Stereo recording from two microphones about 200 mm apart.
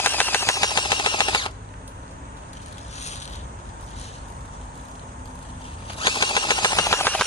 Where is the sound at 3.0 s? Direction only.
35° left (ahead or behind).